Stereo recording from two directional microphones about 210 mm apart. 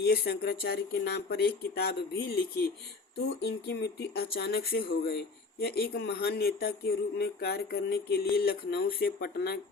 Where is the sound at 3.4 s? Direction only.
50° left (ahead or behind).